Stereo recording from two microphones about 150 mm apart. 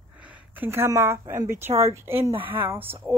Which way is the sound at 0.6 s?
15° right (ahead or behind).